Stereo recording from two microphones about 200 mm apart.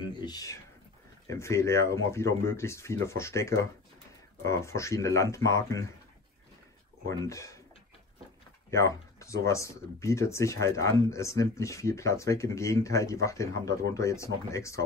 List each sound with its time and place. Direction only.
0.1 s speech: 20° left (ahead or behind)
7.1 s speech: 15° left (ahead or behind)
8.6 s speech: 15° left (ahead or behind)